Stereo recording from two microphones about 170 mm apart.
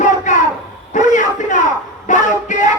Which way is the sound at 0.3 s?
45° left (ahead or behind).